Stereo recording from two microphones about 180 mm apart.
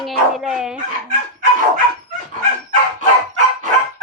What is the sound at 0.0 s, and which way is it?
Dog, centre (ahead or behind).